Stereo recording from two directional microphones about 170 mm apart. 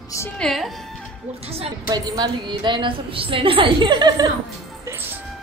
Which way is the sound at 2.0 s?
25° right (ahead or behind).